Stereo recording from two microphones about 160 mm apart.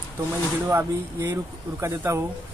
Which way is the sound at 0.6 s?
20° right (ahead or behind).